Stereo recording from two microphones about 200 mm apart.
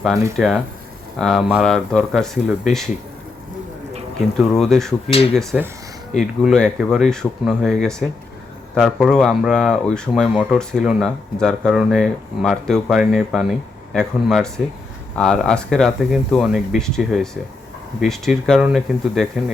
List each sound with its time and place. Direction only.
0.3 s speech: centre (ahead or behind)
4.5 s speech: centre (ahead or behind)